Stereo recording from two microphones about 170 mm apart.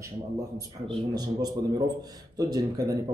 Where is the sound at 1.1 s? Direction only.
25° right (ahead or behind).